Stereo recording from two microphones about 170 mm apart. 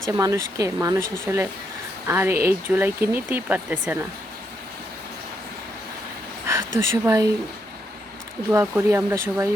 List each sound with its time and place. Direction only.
0.1 s speech: 20° right (ahead or behind)
6.7 s speech: 15° right (ahead or behind)
8.4 s speech: 10° right (ahead or behind)